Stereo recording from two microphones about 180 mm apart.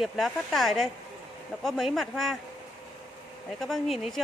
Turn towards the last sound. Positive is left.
turn(degrees=0)  # may be behind; listen again after turning